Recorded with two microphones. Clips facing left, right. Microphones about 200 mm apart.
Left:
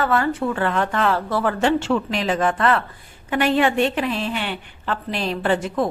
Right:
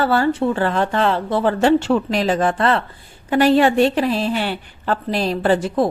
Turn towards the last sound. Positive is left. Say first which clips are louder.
# right 4 dB
turn(degrees=-35)  # may be behind; listen again after turning